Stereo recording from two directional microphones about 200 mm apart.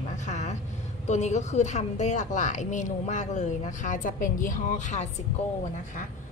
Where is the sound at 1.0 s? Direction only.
35° left (ahead or behind).